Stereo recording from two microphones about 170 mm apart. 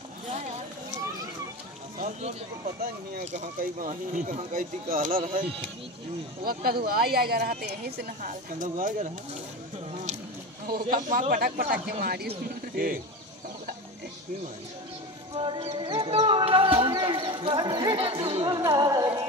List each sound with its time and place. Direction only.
2.0 s a sound: 45° right (ahead or behind)
3.3 s speech: 45° right (ahead or behind)
6.4 s speech: 60° right (ahead or behind)
10.7 s speech: 55° right (ahead or behind)
15.3 s speech: 30° right (ahead or behind)
18.2 s music: 35° right (ahead or behind)
18.5 s music: 20° right (ahead or behind)